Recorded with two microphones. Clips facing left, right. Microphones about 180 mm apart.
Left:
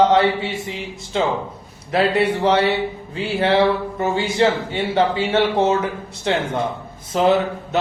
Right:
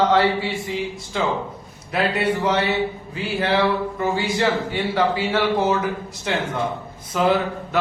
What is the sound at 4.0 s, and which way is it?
Speech, 25° left (ahead or behind).